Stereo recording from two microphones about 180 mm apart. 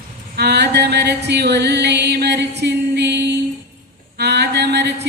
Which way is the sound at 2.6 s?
70° right (ahead or behind).